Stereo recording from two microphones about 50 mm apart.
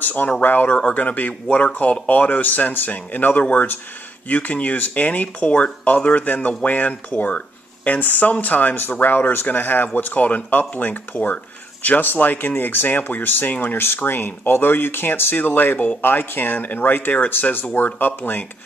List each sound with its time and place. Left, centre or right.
0.0 s speech: left
0.7 s speech: left
0.9 s speech: left